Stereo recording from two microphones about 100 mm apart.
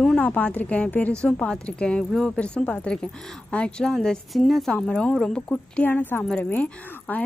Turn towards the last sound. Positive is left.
turn(degrees=15)  # may be behind; listen again after turning